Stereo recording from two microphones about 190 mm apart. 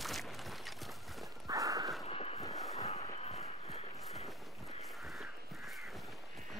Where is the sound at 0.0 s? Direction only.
Centre (ahead or behind).